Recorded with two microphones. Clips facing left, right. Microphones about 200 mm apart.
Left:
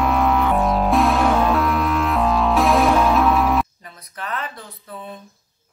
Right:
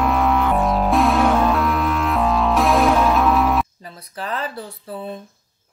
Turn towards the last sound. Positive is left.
turn(degrees=-30)  # may be behind; listen again after turning